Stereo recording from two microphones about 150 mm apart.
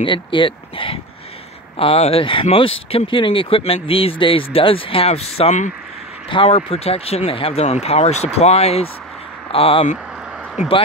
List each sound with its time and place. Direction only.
0.0 s speech: 35° left (ahead or behind)